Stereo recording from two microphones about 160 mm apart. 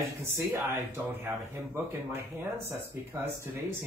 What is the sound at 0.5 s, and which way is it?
Speech, 15° right (ahead or behind).